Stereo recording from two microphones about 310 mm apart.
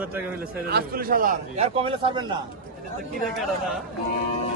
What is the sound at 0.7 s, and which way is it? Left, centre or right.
A man's voice, right.